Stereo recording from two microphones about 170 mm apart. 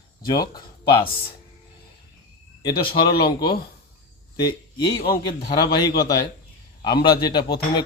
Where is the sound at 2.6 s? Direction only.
25° left (ahead or behind).